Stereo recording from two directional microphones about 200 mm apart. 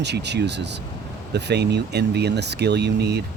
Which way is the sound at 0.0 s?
60° right (ahead or behind).